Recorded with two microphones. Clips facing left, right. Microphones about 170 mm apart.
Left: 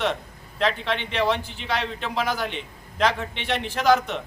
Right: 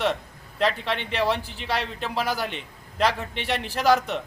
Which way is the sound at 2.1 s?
35° right (ahead or behind).